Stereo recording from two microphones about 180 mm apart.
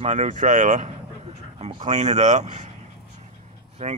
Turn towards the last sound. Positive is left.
turn(degrees=-40)  # may be behind; listen again after turning